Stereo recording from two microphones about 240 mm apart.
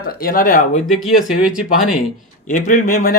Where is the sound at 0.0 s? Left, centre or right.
Left.